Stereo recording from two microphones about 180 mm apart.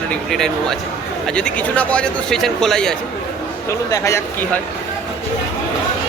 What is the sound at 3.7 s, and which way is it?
Speech, 15° left (ahead or behind).